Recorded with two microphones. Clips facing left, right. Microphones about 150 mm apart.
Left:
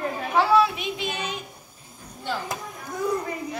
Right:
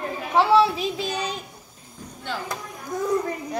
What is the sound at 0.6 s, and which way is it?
Child singing, 35° right (ahead or behind).